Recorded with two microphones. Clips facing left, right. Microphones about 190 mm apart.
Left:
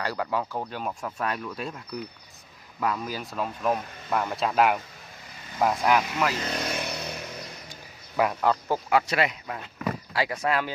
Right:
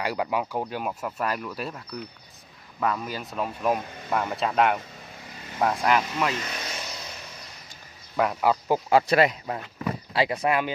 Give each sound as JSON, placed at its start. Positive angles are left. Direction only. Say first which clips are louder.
{"t": 0.0, "sound": "speech", "louder": "right 2 dB", "side_deg": -15}
{"t": 6.6, "sound": "vehicle", "louder": "left 6 dB", "side_deg": 60}
{"t": 8.2, "sound": "speech", "louder": "right 1 dB", "side_deg": -5}
{"t": 8.9, "sound": "speech", "louder": "right 5 dB", "side_deg": -35}
{"t": 10.1, "sound": "speech", "louder": "right 3 dB", "side_deg": -20}